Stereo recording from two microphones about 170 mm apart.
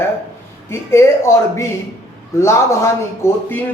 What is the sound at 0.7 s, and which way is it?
Speech, 15° left (ahead or behind).